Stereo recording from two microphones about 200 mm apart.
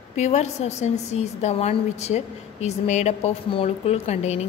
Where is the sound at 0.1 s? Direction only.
35° left (ahead or behind).